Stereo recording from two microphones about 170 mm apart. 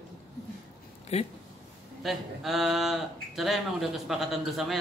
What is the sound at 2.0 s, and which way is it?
Speech, centre (ahead or behind).